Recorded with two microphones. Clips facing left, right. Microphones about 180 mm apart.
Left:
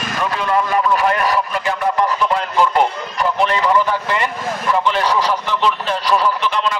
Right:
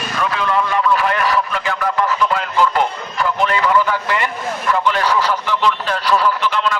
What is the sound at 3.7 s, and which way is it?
Speech, 15° left (ahead or behind).